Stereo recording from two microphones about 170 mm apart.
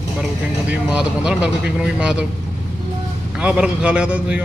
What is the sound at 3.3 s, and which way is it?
A man's voice, 5° right (ahead or behind).